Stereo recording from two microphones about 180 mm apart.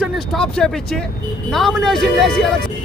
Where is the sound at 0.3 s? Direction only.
5° left (ahead or behind).